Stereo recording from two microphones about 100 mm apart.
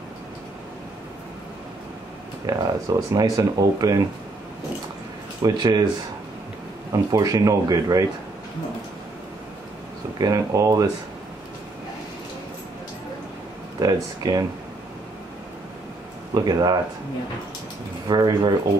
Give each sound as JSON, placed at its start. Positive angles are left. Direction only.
{"t": 2.4, "sound": "speech", "side_deg": -40}
{"t": 5.4, "sound": "speech", "side_deg": -40}
{"t": 6.9, "sound": "speech", "side_deg": -35}
{"t": 10.1, "sound": "speech", "side_deg": -40}
{"t": 13.7, "sound": "speech", "side_deg": -40}
{"t": 16.3, "sound": "speech", "side_deg": -40}
{"t": 18.0, "sound": "speech", "side_deg": -40}